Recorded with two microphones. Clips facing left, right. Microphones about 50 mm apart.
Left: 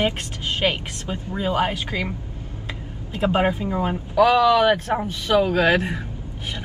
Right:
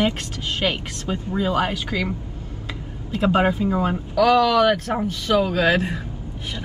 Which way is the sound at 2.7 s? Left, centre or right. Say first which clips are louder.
Right 4 dB; left.